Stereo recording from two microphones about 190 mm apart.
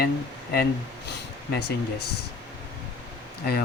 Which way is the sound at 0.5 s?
55° left (ahead or behind).